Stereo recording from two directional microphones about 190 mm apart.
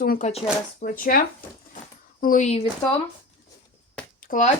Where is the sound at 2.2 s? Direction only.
40° left (ahead or behind).